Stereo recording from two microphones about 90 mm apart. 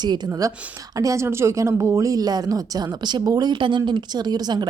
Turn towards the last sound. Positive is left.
turn(degrees=-50)  # may be behind; listen again after turning